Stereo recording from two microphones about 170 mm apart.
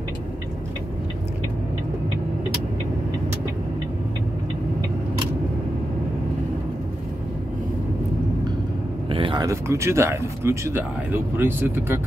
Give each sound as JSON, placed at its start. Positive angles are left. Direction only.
{"t": 9.1, "sound": "speech", "side_deg": -30}